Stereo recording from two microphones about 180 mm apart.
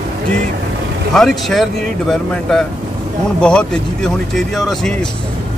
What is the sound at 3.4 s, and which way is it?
Speech, 5° left (ahead or behind).